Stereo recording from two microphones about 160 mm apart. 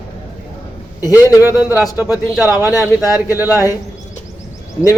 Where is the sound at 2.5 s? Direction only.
20° left (ahead or behind).